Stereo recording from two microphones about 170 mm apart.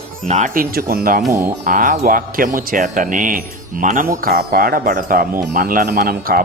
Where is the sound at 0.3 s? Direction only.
45° right (ahead or behind).